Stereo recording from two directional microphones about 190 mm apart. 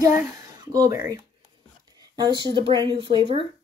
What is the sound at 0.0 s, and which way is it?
Speech, 15° right (ahead or behind).